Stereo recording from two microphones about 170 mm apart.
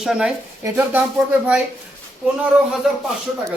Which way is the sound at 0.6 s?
15° right (ahead or behind).